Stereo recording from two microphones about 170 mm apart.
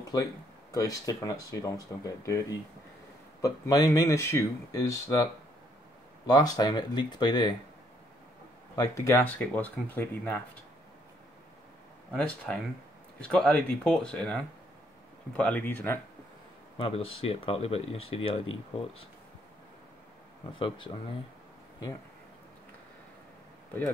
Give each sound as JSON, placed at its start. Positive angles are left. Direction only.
{"t": 0.1, "sound": "speech", "side_deg": 20}
{"t": 8.7, "sound": "speech", "side_deg": 20}
{"t": 12.1, "sound": "speech", "side_deg": 5}
{"t": 16.7, "sound": "speech", "side_deg": 35}
{"t": 20.5, "sound": "speech", "side_deg": 30}